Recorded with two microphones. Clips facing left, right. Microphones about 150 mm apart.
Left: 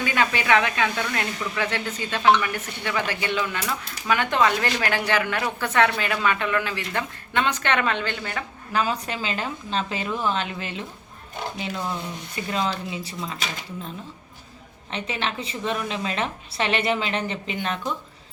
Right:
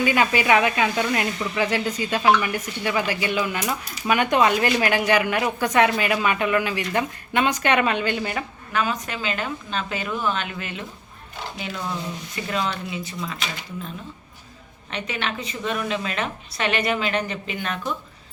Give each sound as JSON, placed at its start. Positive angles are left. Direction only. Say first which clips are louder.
{"t": 0.0, "sound": "speech", "louder": "right 4 dB", "side_deg": -10}
{"t": 8.7, "sound": "a woman's voice", "louder": "even", "side_deg": 30}
{"t": 12.5, "sound": "speech", "louder": "even", "side_deg": 30}
{"t": 14.8, "sound": "a woman's voice", "louder": "even", "side_deg": 30}